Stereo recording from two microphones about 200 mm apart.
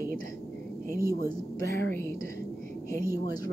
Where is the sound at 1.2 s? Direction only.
50° right (ahead or behind).